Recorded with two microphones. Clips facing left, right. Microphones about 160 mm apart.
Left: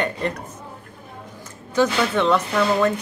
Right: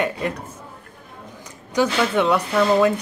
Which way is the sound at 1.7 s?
10° right (ahead or behind).